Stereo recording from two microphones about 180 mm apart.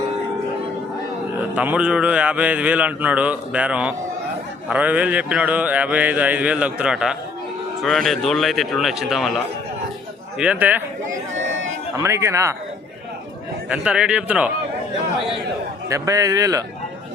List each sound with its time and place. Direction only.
1.5 s a man's voice: 5° right (ahead or behind)
10.3 s speech: 5° right (ahead or behind)
11.9 s speech: 15° right (ahead or behind)
13.7 s a man's voice: 5° right (ahead or behind)
15.9 s a man's voice: 20° right (ahead or behind)